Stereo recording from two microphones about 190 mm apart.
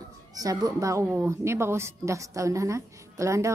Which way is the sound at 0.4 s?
20° right (ahead or behind).